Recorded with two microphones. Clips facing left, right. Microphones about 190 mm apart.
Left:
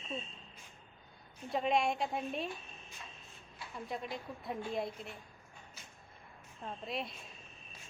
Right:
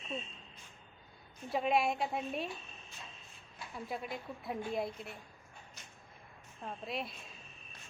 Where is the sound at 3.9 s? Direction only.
5° right (ahead or behind).